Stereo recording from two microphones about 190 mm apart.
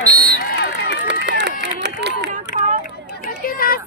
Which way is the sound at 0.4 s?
55° left (ahead or behind).